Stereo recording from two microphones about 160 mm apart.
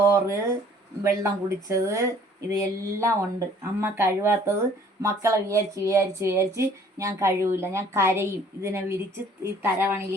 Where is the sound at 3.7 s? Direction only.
15° right (ahead or behind).